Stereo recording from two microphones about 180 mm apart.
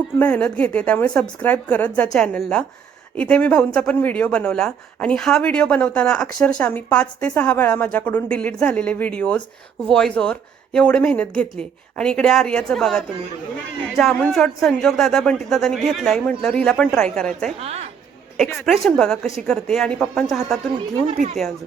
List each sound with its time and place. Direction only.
0.2 s speech: 5° left (ahead or behind)
17.6 s a woman's voice: 35° right (ahead or behind)
18.3 s speech: centre (ahead or behind)
21.1 s a woman's voice: 40° right (ahead or behind)